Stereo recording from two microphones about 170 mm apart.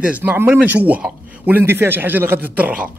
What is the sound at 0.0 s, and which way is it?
A man's voice, 10° right (ahead or behind).